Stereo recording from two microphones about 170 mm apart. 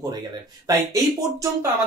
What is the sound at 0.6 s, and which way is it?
Speech, 20° right (ahead or behind).